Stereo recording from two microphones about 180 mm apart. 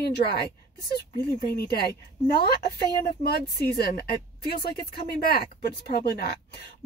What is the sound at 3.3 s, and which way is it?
A woman's voice, 60° left (ahead or behind).